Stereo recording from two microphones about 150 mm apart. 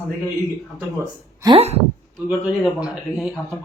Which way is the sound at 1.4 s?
40° right (ahead or behind).